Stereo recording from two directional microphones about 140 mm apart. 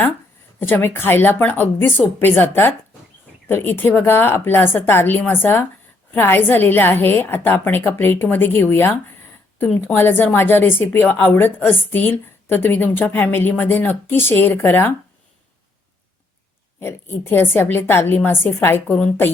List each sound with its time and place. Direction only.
0.7 s a woman's voice: 15° left (ahead or behind)
17.2 s a woman's voice: 15° left (ahead or behind)